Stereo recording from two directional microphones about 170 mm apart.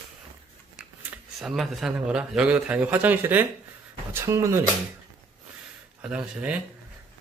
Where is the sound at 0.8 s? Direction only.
5° right (ahead or behind).